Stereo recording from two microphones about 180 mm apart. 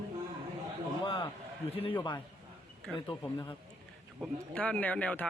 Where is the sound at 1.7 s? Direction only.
30° left (ahead or behind).